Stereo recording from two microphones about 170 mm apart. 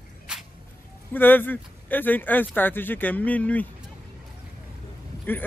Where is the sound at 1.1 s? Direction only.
10° left (ahead or behind).